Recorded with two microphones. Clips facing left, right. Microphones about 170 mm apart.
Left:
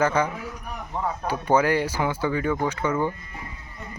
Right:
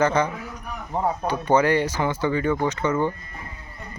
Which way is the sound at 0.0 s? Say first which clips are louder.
Right 2 dB; 5° left (ahead or behind).